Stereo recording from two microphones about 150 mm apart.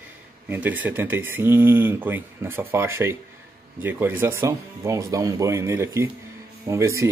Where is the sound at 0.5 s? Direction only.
10° right (ahead or behind).